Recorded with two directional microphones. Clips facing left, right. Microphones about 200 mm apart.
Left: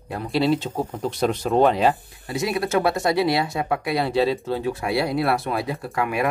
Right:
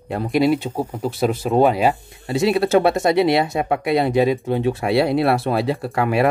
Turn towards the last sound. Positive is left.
turn(degrees=-30)  # may be behind; listen again after turning